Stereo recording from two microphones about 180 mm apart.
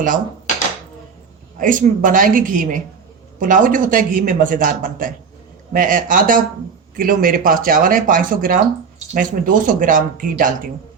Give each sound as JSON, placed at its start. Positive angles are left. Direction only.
{"t": 1.5, "sound": "speech", "side_deg": -50}